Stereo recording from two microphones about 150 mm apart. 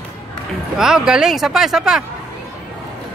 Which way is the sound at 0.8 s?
5° right (ahead or behind).